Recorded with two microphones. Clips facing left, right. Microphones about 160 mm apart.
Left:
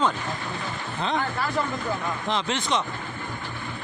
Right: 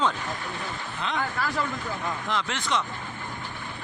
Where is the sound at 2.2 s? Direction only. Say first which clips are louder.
Left 4 dB; 20° left (ahead or behind).